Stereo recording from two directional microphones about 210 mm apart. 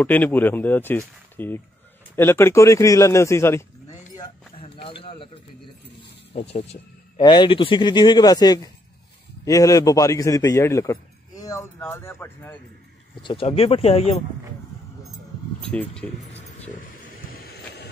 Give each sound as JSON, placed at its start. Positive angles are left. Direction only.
{"t": 0.0, "sound": "a man's voice", "side_deg": 10}
{"t": 4.2, "sound": "a sound", "side_deg": 25}
{"t": 6.5, "sound": "a man's voice", "side_deg": 25}
{"t": 13.2, "sound": "speech", "side_deg": 25}
{"t": 17.3, "sound": "vehicle", "side_deg": 50}